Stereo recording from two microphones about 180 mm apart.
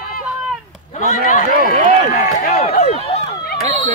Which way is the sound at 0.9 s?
45° left (ahead or behind).